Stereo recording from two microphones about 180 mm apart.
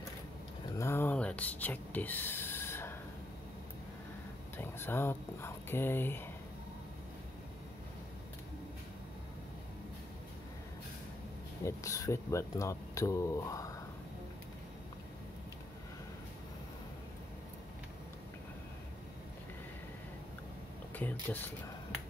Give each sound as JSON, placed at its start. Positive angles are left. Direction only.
{"t": 0.7, "sound": "a sound", "side_deg": 15}
{"t": 4.6, "sound": "speech", "side_deg": 10}
{"t": 11.6, "sound": "speech", "side_deg": 15}
{"t": 20.9, "sound": "speech", "side_deg": 10}